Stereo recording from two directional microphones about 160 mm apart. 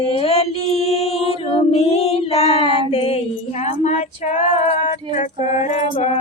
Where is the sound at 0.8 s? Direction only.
40° left (ahead or behind).